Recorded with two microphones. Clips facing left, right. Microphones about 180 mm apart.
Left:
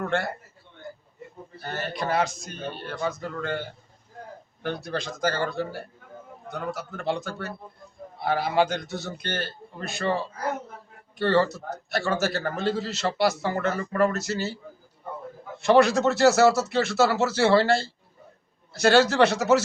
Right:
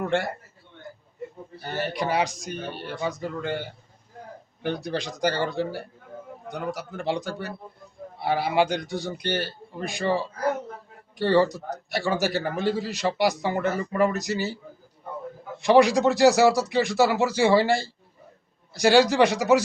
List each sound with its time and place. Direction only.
0.0 s a man's voice: 15° right (ahead or behind)
1.6 s a man's voice: 15° right (ahead or behind)
11.2 s a man's voice: 15° right (ahead or behind)